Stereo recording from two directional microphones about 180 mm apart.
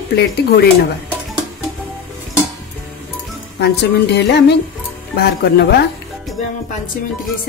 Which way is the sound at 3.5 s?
65° left (ahead or behind).